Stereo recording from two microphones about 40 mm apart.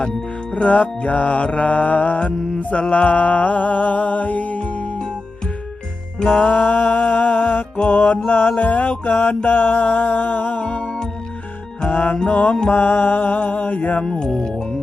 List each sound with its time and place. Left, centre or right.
0.5 s music: left
6.2 s music: left
9.5 s music: left
9.8 s music: left
10.6 s music: left
10.8 s music: centre
11.9 s music: left
14.0 s speech: centre